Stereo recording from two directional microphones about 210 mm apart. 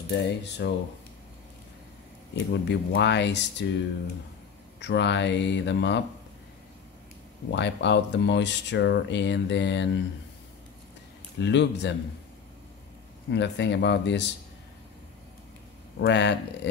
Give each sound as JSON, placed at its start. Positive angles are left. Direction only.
{"t": 0.1, "sound": "speech", "side_deg": 55}
{"t": 2.3, "sound": "speech", "side_deg": 55}
{"t": 4.7, "sound": "speech", "side_deg": 55}
{"t": 7.5, "sound": "speech", "side_deg": 55}
{"t": 11.3, "sound": "speech", "side_deg": 55}
{"t": 13.3, "sound": "speech", "side_deg": 55}
{"t": 16.0, "sound": "speech", "side_deg": 55}